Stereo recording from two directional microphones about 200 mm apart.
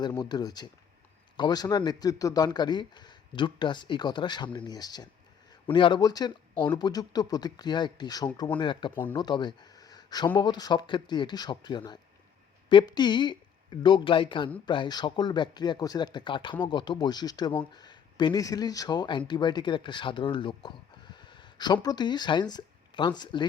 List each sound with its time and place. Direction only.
0.0 s speech: 20° left (ahead or behind)